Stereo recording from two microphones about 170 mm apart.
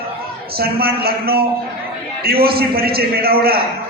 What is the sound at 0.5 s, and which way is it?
A man's voice, 65° right (ahead or behind).